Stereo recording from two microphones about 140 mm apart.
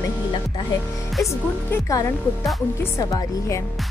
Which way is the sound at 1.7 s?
20° left (ahead or behind).